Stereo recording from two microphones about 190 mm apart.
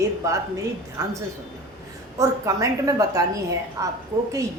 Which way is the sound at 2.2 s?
15° right (ahead or behind).